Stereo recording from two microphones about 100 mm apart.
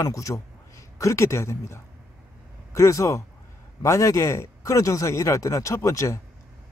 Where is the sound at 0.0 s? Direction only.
35° left (ahead or behind).